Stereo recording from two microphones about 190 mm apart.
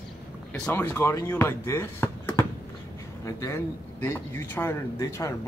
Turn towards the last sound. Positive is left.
turn(degrees=15)  # may be behind; listen again after turning